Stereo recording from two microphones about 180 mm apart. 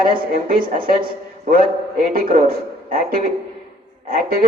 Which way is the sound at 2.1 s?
50° right (ahead or behind).